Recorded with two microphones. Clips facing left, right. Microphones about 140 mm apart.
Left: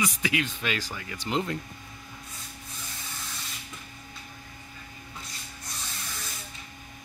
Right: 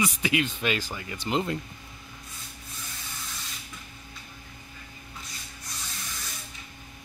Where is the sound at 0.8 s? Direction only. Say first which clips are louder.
Right 1 dB; 25° right (ahead or behind).